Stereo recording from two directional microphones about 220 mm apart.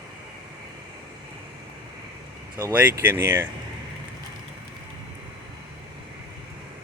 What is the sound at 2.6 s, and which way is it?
Speech, 10° right (ahead or behind).